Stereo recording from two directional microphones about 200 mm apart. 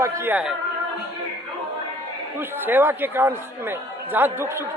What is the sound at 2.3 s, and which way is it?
A man's voice, 10° right (ahead or behind).